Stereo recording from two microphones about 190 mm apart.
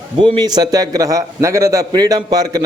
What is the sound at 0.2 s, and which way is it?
A man's voice, 20° right (ahead or behind).